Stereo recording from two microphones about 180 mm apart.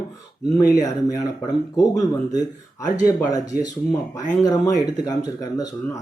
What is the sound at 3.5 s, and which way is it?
Speech, 55° left (ahead or behind).